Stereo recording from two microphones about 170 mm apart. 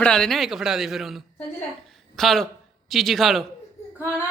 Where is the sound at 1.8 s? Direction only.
Centre (ahead or behind).